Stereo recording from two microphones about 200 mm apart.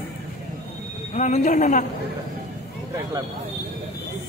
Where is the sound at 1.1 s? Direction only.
35° left (ahead or behind).